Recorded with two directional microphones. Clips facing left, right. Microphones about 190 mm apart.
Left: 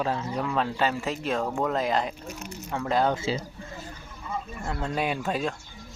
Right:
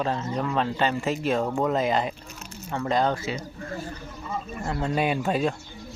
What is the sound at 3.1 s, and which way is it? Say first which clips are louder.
Speech: left 2 dB; 25° left (ahead or behind).